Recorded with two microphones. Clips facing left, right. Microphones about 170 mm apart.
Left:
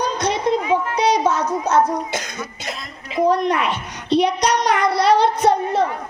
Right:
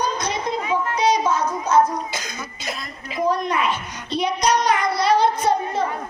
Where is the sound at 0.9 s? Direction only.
70° left (ahead or behind).